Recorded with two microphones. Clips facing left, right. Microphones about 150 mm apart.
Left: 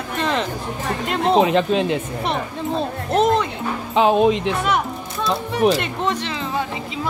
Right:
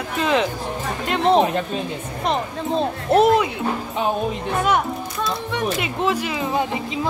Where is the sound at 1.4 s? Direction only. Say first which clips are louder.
Left 3 dB; 90° left.